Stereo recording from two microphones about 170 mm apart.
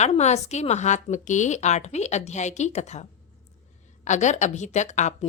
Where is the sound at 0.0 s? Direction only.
40° left (ahead or behind).